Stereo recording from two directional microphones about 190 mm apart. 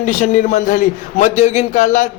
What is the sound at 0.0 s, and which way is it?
A man's voice, 40° left (ahead or behind).